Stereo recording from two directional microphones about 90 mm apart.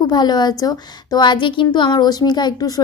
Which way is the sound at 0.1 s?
50° left (ahead or behind).